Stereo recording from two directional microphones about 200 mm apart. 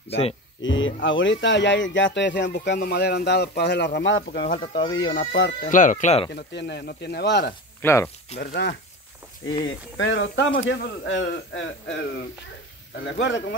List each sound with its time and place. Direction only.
0.1 s speech: 30° left (ahead or behind)
0.6 s speech: 70° left (ahead or behind)
4.8 s speech: 20° left (ahead or behind)
5.3 s a man's voice: 65° left (ahead or behind)
5.7 s speech: 40° left (ahead or behind)
6.3 s speech: 60° left (ahead or behind)
7.8 s speech: 15° left (ahead or behind)
8.4 s speech: 60° left (ahead or behind)
9.9 s a man's voice: 70° left (ahead or behind)
13.0 s speech: 65° left (ahead or behind)